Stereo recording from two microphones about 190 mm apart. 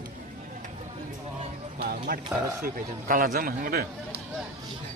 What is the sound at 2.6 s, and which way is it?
Speech, 45° right (ahead or behind).